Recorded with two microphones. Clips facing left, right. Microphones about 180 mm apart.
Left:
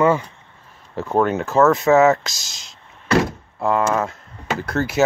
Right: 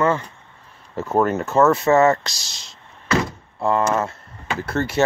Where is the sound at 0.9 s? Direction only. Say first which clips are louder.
Even; centre (ahead or behind).